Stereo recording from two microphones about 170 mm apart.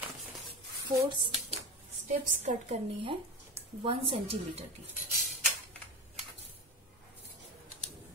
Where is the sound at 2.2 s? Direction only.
40° right (ahead or behind).